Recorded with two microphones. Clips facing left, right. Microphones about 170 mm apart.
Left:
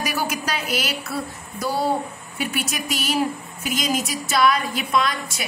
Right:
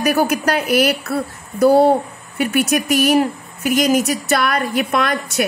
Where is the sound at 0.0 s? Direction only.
55° right (ahead or behind).